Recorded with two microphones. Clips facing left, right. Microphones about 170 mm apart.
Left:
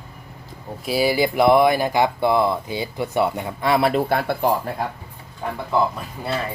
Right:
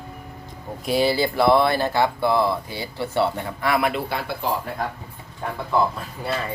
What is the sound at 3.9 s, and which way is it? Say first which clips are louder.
Speech: left 7 dB; 50° left (ahead or behind).